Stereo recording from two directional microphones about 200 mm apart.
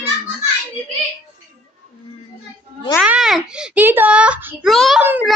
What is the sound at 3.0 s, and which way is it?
A child's voice, 5° right (ahead or behind).